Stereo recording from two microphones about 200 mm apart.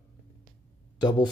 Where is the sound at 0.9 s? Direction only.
20° left (ahead or behind).